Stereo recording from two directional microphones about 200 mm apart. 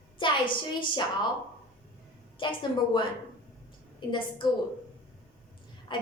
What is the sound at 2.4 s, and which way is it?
Speech, 25° left (ahead or behind).